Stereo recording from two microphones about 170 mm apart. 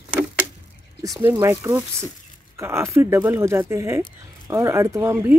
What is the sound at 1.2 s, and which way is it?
Speech, 15° right (ahead or behind).